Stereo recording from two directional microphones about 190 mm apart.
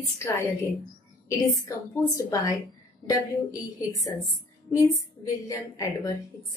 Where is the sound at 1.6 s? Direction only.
15° left (ahead or behind).